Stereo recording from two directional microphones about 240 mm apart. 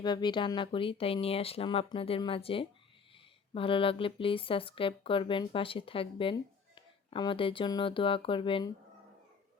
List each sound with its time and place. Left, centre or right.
0.0 s speech: centre